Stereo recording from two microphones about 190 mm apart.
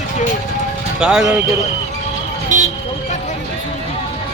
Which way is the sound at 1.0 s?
5° right (ahead or behind).